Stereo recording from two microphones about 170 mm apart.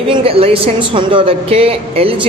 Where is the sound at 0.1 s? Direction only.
35° right (ahead or behind).